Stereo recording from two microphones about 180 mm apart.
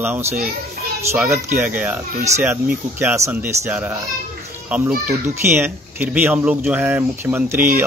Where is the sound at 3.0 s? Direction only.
15° right (ahead or behind).